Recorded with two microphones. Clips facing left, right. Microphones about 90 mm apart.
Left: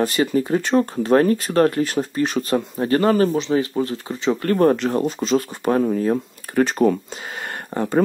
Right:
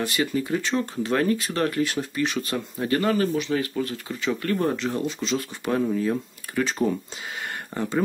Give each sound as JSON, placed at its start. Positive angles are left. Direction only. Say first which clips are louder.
{"t": 0.0, "sound": "speech", "louder": "left 6 dB", "side_deg": 40}
{"t": 4.5, "sound": "speech", "louder": "left 9 dB", "side_deg": 55}
{"t": 7.4, "sound": "a sound", "louder": "left 5 dB", "side_deg": 45}